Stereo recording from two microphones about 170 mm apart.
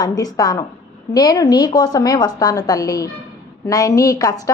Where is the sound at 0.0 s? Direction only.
20° left (ahead or behind).